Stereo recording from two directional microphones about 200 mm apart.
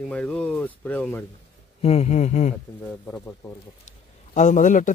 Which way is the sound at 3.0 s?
10° left (ahead or behind).